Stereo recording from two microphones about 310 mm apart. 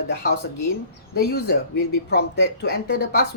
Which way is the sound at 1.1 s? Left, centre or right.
Left.